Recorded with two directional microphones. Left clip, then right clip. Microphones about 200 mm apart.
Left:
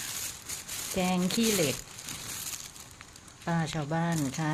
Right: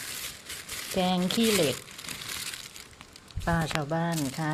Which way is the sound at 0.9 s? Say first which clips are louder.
Right 3 dB; 5° right (ahead or behind).